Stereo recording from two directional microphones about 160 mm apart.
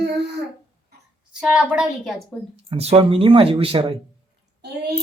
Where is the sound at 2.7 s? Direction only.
40° right (ahead or behind).